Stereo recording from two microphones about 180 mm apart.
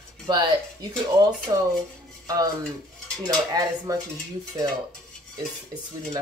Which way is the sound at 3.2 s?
20° right (ahead or behind).